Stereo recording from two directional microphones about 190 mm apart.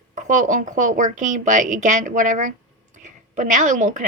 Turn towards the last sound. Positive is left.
turn(degrees=-40)  # may be behind; listen again after turning